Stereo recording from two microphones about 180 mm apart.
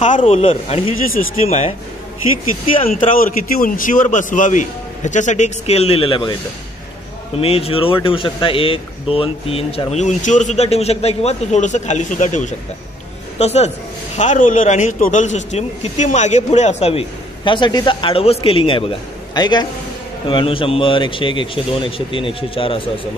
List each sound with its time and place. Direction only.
0.2 s a man's voice: 30° left (ahead or behind)
2.8 s a man's voice: 50° left (ahead or behind); by 6.3 s 30° left (ahead or behind)
7.3 s a man's voice: 30° left (ahead or behind)
17.5 s a man's voice: 25° left (ahead or behind)